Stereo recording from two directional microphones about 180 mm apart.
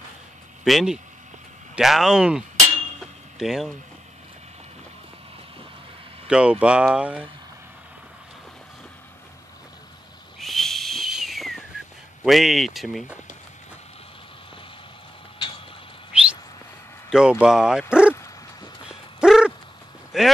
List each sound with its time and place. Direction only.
0.7 s speech: centre (ahead or behind)
3.0 s cutlery: 5° right (ahead or behind)
6.2 s speech: 5° right (ahead or behind)
10.4 s whistle: centre (ahead or behind)
12.2 s speech: centre (ahead or behind)
16.1 s bird: 5° right (ahead or behind)
17.1 s speech: 5° right (ahead or behind)
18.1 s dog: 15° left (ahead or behind)
18.9 s a sound: 5° right (ahead or behind)
20.1 s speech: centre (ahead or behind)